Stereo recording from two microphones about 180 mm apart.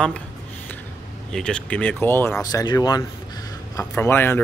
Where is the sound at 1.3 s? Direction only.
5° left (ahead or behind).